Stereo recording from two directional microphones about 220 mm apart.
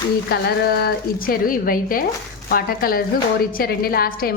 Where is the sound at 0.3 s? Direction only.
45° left (ahead or behind).